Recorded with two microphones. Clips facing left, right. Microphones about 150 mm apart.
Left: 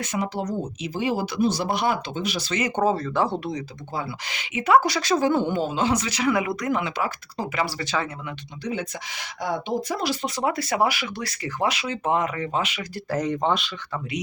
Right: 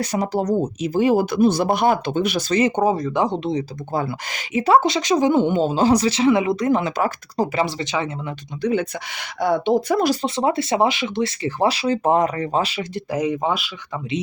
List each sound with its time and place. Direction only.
0.0 s speech: 35° right (ahead or behind); by 2.5 s 55° right (ahead or behind)
2.5 s speech: 30° right (ahead or behind)
2.7 s speech: 15° right (ahead or behind)
3.9 s speech: 45° right (ahead or behind)
7.6 s speech: 20° right (ahead or behind)
8.6 s speech: 60° right (ahead or behind)
10.2 s speech: 25° right (ahead or behind)
13.1 s speech: 10° right (ahead or behind)